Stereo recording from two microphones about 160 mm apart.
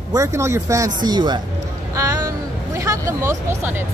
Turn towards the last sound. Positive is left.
turn(degrees=-15)  # may be behind; listen again after turning